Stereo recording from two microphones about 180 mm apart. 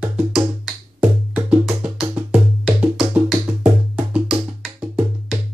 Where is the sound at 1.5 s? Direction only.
5° right (ahead or behind).